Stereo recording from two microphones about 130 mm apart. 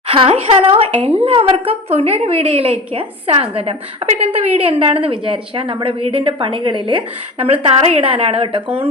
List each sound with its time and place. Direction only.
0.1 s a woman's voice: 50° right (ahead or behind)